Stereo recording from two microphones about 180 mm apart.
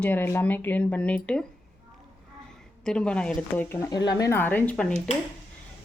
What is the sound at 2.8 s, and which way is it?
Speech, 5° left (ahead or behind).